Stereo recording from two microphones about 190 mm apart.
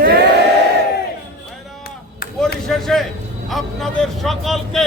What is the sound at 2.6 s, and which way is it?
Speech, centre (ahead or behind).